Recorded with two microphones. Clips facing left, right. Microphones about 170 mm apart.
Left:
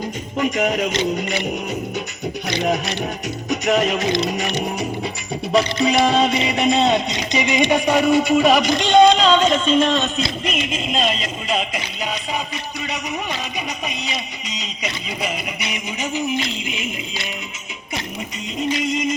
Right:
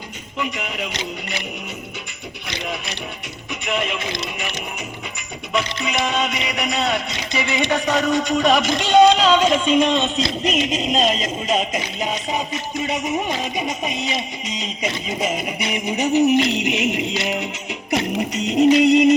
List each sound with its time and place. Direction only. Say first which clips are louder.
0.3 s music: left 7 dB; 45° left (ahead or behind)
2.5 s music: left 8 dB; 45° left (ahead or behind)
5.5 s music: left 6 dB; 35° left (ahead or behind); by 10.2 s 20° right (ahead or behind)
10.4 s speech: right 3 dB; 40° right (ahead or behind)
15.7 s music: right 8 dB; 60° right (ahead or behind)